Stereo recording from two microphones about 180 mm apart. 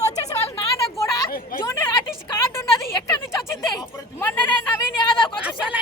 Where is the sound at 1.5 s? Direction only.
50° left (ahead or behind).